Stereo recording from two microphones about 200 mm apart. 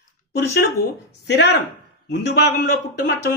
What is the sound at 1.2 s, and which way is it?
Speech, 55° left (ahead or behind).